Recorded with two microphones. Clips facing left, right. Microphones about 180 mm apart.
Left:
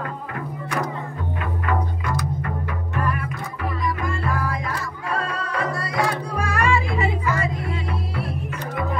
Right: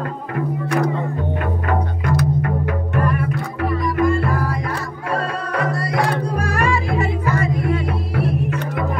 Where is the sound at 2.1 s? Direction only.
60° right (ahead or behind).